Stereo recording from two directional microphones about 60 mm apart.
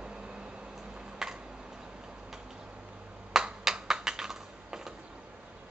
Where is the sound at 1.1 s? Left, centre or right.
Centre.